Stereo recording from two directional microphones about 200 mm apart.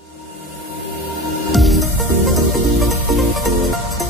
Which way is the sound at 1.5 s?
Centre (ahead or behind).